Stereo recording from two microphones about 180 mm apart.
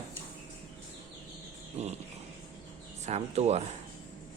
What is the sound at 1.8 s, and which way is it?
Speech, 35° right (ahead or behind).